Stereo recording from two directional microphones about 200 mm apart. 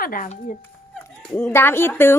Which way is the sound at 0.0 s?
45° left (ahead or behind).